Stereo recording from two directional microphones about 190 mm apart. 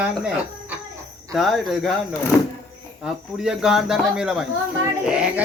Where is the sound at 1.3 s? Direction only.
Centre (ahead or behind).